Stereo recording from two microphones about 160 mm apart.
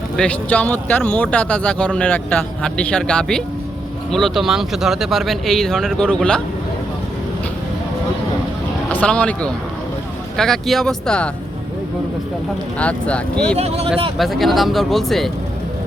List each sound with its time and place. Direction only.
0.2 s speech: 10° left (ahead or behind)
8.9 s speech: 10° left (ahead or behind)
12.8 s speech: 10° left (ahead or behind)
13.6 s speech: 40° right (ahead or behind)
14.2 s speech: centre (ahead or behind)